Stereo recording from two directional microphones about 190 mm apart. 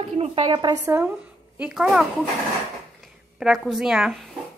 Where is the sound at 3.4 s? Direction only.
Centre (ahead or behind).